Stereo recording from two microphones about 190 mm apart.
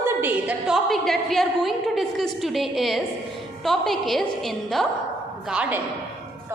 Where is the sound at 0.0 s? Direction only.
10° right (ahead or behind).